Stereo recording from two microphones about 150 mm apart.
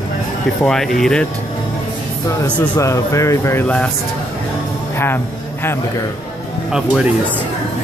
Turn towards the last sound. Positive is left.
turn(degrees=-5)  # may be behind; listen again after turning